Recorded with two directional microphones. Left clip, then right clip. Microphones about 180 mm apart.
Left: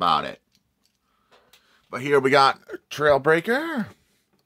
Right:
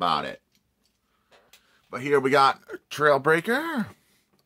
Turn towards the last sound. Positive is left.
turn(degrees=5)  # may be behind; listen again after turning